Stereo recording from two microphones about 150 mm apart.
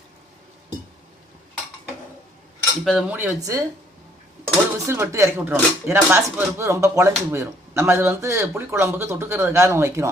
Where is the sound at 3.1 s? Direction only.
20° right (ahead or behind).